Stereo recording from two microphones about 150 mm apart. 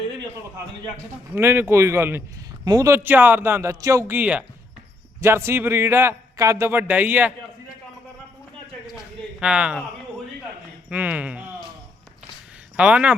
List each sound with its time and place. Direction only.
1.4 s a man's voice: 15° right (ahead or behind)
9.4 s a man's voice: 5° right (ahead or behind)
10.8 s a man's voice: 10° right (ahead or behind)
12.7 s speech: 10° right (ahead or behind)